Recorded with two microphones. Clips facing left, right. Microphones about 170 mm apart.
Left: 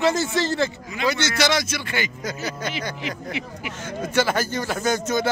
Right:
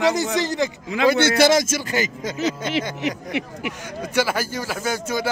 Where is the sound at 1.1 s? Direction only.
50° right (ahead or behind).